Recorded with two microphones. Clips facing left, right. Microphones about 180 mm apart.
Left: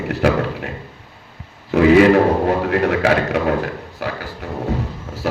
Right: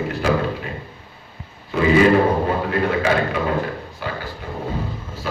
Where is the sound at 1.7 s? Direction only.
75° left (ahead or behind).